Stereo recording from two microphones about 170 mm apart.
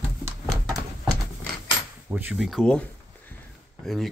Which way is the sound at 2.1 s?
5° right (ahead or behind).